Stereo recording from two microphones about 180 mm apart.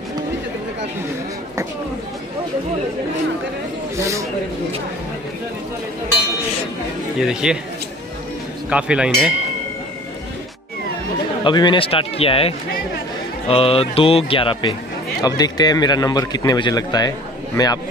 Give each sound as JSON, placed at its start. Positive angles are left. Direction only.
{"t": 7.2, "sound": "speech", "side_deg": -5}
{"t": 8.6, "sound": "speech", "side_deg": -5}
{"t": 11.4, "sound": "a man's voice", "side_deg": 25}